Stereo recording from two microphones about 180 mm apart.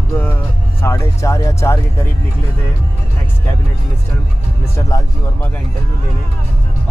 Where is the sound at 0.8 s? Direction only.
15° left (ahead or behind).